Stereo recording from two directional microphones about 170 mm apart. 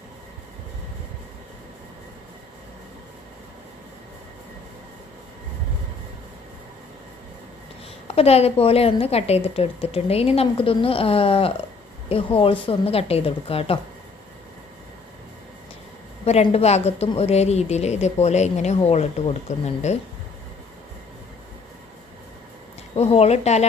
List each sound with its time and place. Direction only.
8.0 s a woman's voice: 35° left (ahead or behind)
16.2 s a woman's voice: 40° left (ahead or behind)
23.0 s a woman's voice: 35° left (ahead or behind)